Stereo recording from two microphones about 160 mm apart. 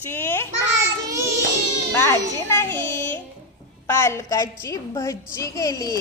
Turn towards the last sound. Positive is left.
turn(degrees=20)  # may be behind; listen again after turning